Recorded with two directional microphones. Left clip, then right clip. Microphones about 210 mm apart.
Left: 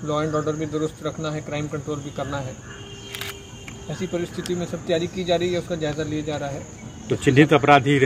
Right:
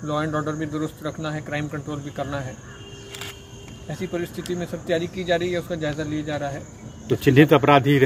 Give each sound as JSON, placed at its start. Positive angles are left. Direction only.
{"t": 0.0, "sound": "speech", "side_deg": -5}
{"t": 4.0, "sound": "speech", "side_deg": -5}
{"t": 7.1, "sound": "speech", "side_deg": -55}